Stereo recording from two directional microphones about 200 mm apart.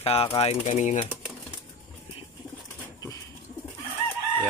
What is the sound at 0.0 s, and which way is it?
Speech, 30° left (ahead or behind).